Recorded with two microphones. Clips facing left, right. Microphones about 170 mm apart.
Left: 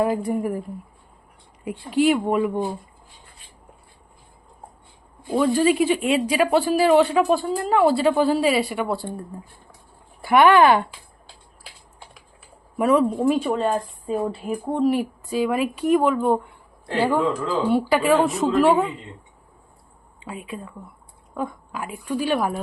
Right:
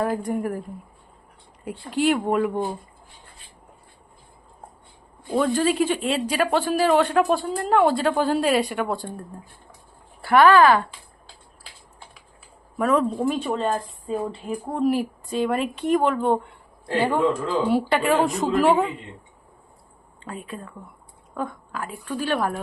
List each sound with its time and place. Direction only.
0.0 s speech: 10° left (ahead or behind)
1.6 s speech: 10° left (ahead or behind)
5.3 s speech: 10° left (ahead or behind); by 10.8 s 25° left (ahead or behind)
12.7 s speech: 10° left (ahead or behind)
17.7 s speech: centre (ahead or behind)
20.1 s a sound: 10° left (ahead or behind)
20.5 s speech: 10° left (ahead or behind)